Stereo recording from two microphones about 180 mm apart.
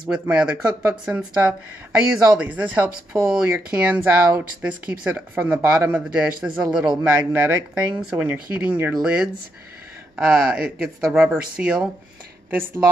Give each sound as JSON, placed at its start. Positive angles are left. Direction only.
{"t": 0.0, "sound": "speech", "side_deg": -5}